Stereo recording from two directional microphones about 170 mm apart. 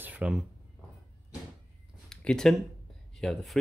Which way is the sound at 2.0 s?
5° left (ahead or behind).